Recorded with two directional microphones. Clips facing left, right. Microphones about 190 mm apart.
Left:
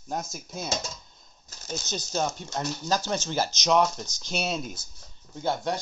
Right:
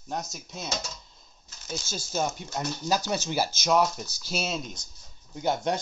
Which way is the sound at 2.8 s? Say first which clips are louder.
Right 1 dB; 10° right (ahead or behind).